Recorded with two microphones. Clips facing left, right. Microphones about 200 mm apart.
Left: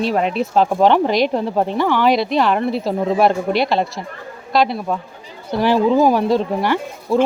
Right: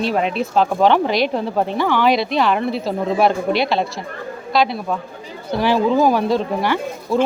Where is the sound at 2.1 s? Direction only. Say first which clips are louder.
Left 1 dB; 40° left (ahead or behind).